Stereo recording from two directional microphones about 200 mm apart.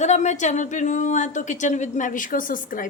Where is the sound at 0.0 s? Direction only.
35° left (ahead or behind).